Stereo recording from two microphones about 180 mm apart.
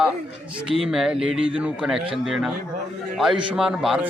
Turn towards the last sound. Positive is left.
turn(degrees=-5)  # may be behind; listen again after turning